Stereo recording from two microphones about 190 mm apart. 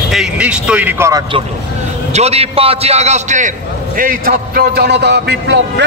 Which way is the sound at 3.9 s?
50° right (ahead or behind).